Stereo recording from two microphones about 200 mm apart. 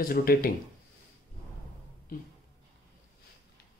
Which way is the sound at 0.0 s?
50° left (ahead or behind).